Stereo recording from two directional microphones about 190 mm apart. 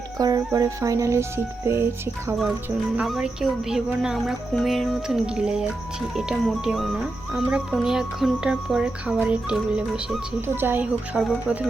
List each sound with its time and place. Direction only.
0.2 s speech: 20° right (ahead or behind)
2.4 s music: 5° right (ahead or behind)